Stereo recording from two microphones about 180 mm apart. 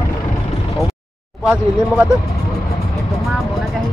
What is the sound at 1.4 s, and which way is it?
Speech, 5° right (ahead or behind).